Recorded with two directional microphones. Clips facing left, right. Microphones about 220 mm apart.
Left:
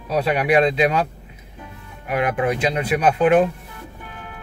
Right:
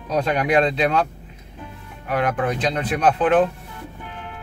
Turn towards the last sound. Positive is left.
turn(degrees=10)  # may be behind; listen again after turning